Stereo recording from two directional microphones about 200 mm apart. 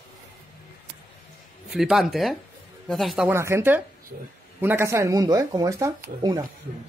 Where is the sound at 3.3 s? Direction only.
15° right (ahead or behind).